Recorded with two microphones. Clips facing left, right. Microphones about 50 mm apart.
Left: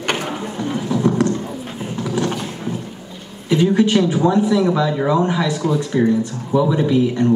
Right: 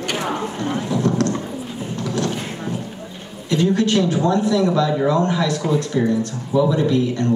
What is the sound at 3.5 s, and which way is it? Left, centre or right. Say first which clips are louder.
Speech: left 3 dB; centre.